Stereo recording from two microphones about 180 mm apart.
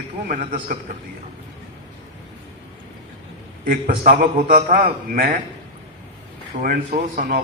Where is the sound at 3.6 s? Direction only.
50° right (ahead or behind).